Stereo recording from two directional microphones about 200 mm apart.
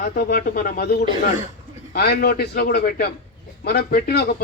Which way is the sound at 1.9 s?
50° left (ahead or behind).